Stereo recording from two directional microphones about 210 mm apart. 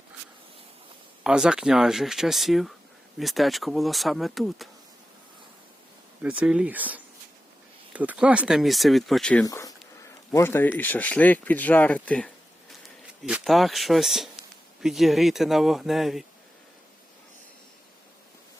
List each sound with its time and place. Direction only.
1.2 s speech: 5° right (ahead or behind)
6.2 s speech: 5° right (ahead or behind)
9.4 s speech: 15° left (ahead or behind); by 16.2 s centre (ahead or behind)